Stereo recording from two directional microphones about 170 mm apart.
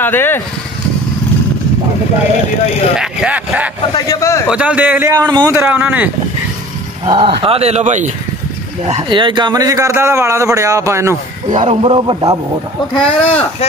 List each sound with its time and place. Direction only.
0.0 s speech: 10° left (ahead or behind)
3.0 s speech: 5° right (ahead or behind)
3.9 s a man's voice: 20° left (ahead or behind)
4.5 s speech: 5° right (ahead or behind)
5.1 s speech: 20° right (ahead or behind)
7.1 s speech: 30° right (ahead or behind)
9.1 s speech: 30° right (ahead or behind)
11.5 s speech: 40° right (ahead or behind)
12.9 s speech: 30° left (ahead or behind)